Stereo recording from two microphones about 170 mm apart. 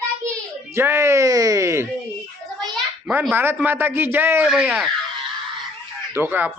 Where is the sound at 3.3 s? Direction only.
10° right (ahead or behind).